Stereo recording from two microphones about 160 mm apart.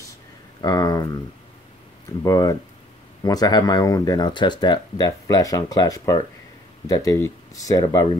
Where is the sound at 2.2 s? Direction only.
25° left (ahead or behind).